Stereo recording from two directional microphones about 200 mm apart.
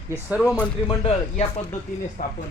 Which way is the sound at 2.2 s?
40° left (ahead or behind).